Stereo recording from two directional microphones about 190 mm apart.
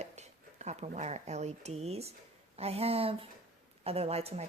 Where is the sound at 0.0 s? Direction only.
35° right (ahead or behind).